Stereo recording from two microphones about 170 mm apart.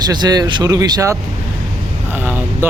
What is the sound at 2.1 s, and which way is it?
Speech, 10° right (ahead or behind).